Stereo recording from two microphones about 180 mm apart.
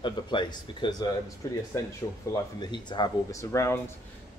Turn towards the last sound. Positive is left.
turn(degrees=15)  # may be behind; listen again after turning